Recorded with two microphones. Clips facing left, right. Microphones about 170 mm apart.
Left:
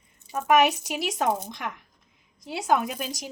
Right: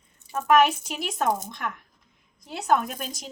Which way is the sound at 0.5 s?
10° left (ahead or behind).